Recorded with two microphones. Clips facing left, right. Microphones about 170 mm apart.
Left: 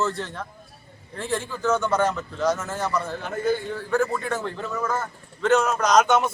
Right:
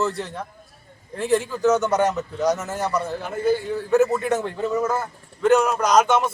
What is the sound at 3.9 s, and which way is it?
A man's voice, 20° right (ahead or behind).